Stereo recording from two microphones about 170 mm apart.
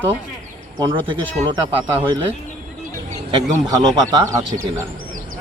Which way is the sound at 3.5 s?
20° right (ahead or behind).